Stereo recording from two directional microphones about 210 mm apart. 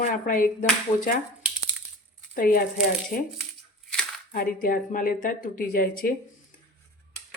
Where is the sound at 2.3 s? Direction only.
40° left (ahead or behind).